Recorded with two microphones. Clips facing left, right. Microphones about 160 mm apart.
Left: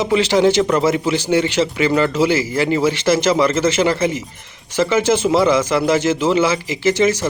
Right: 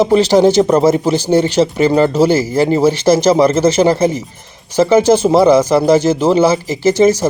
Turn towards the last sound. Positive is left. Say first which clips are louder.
# right 5 dB
turn(degrees=-40)  # may be behind; listen again after turning